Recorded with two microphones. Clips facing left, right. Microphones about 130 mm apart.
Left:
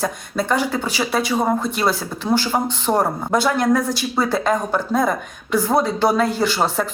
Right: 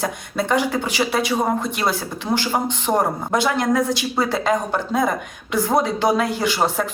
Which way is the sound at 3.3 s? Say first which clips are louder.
Left 2 dB; 20° right (ahead or behind).